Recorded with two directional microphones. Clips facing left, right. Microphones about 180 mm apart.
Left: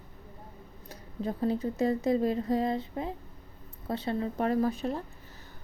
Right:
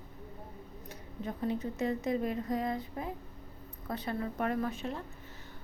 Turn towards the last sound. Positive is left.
turn(degrees=35)  # may be behind; listen again after turning